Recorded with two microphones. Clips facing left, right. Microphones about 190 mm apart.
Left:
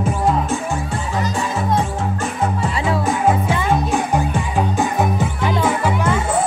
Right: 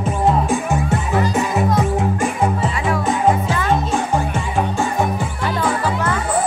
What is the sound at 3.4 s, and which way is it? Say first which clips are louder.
Music: even; 15° left (ahead or behind).